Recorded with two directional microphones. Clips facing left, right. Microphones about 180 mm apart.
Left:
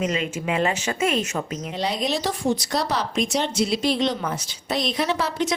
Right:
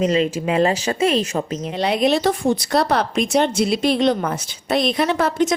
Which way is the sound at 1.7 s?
60° right (ahead or behind).